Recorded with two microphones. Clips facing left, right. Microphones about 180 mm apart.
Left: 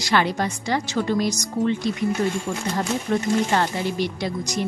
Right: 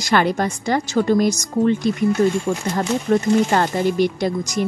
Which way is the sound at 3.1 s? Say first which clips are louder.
Right 5 dB; 45° right (ahead or behind).